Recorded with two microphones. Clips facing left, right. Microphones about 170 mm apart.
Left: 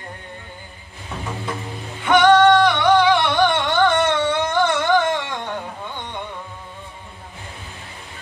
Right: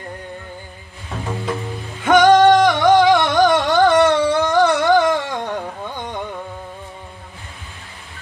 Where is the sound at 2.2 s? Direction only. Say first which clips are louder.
Right 1 dB; 20° right (ahead or behind).